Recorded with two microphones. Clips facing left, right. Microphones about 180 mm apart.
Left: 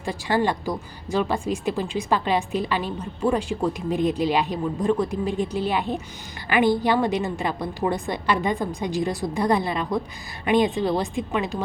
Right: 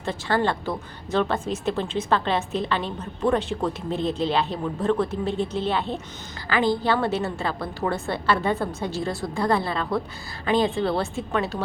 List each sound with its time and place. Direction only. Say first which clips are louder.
0.0 s a woman's voice: left 1 dB; 10° left (ahead or behind)